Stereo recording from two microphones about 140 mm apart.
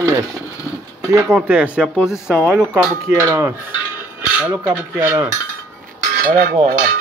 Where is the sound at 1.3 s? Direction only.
10° right (ahead or behind).